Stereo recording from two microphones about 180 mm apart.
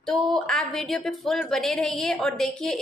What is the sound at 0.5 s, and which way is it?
A woman's voice, centre (ahead or behind).